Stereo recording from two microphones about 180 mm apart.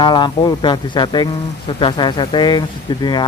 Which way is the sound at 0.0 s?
25° left (ahead or behind).